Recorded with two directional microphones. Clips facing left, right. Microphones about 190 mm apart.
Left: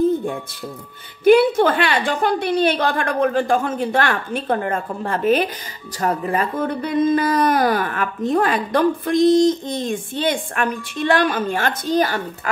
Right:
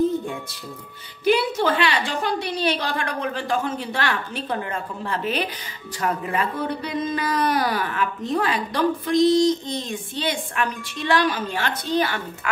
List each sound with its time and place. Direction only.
1.2 s speech: 55° left (ahead or behind)